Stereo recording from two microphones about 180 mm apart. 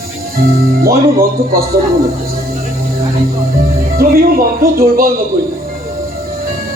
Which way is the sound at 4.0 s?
55° right (ahead or behind).